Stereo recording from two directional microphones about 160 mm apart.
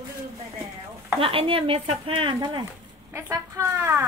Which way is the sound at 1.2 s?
35° right (ahead or behind).